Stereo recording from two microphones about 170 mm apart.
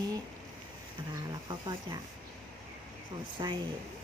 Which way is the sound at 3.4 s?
25° right (ahead or behind).